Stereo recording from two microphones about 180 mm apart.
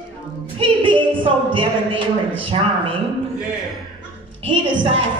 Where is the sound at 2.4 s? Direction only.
30° right (ahead or behind).